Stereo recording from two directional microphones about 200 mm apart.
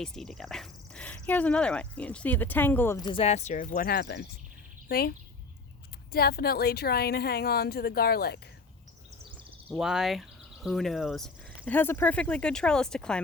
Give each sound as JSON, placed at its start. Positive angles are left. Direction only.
{"t": 0.0, "sound": "speech", "side_deg": 5}
{"t": 3.1, "sound": "a woman's voice", "side_deg": 30}
{"t": 9.6, "sound": "speech", "side_deg": -5}